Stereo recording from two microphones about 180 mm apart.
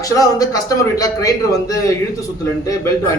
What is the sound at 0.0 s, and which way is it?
A man's voice, 20° left (ahead or behind).